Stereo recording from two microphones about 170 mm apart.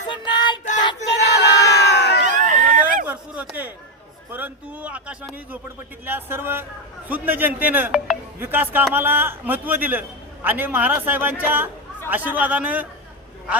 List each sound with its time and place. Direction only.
0.1 s child singing: 25° left (ahead or behind)
1.2 s crowd: 80° left
2.2 s a sound: 45° right (ahead or behind)
4.3 s a man's voice: 10° right (ahead or behind)